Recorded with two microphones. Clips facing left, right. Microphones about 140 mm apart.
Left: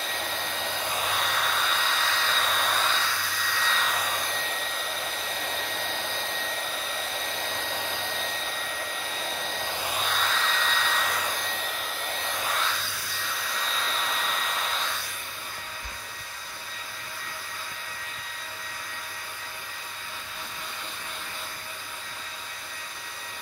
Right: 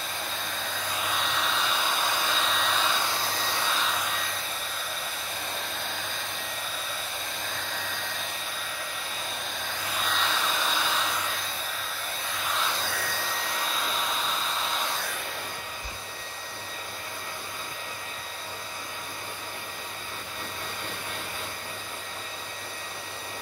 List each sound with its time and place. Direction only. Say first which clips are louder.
1.1 s hair dryer: left 1 dB; 5° left (ahead or behind)
3.2 s hair dryer: right 2 dB; 35° right (ahead or behind)
10.0 s hair dryer: right 2 dB; centre (ahead or behind)
13.7 s hair dryer: even; 5° right (ahead or behind)